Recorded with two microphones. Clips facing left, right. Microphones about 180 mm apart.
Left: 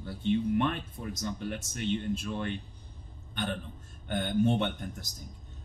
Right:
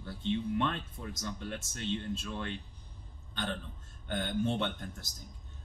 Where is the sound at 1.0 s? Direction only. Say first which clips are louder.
Left 5 dB; 15° left (ahead or behind).